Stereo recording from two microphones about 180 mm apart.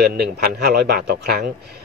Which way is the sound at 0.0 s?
60° right (ahead or behind).